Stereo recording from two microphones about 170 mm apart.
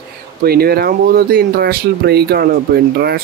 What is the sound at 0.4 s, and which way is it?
Speech, 65° right (ahead or behind).